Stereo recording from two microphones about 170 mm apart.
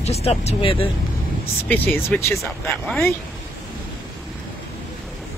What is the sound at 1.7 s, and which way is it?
Speech, 10° left (ahead or behind).